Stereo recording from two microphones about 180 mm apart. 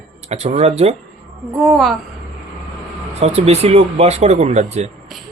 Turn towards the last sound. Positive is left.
turn(degrees=-40)  # may be behind; listen again after turning